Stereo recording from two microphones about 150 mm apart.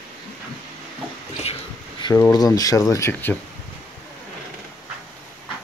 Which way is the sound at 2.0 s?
25° left (ahead or behind).